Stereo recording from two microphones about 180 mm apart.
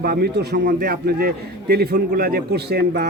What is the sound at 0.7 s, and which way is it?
A man's voice, 55° right (ahead or behind).